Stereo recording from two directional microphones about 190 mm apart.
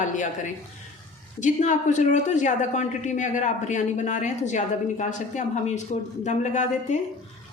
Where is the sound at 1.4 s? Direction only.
40° left (ahead or behind).